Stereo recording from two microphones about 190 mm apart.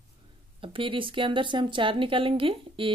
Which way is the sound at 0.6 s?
25° right (ahead or behind).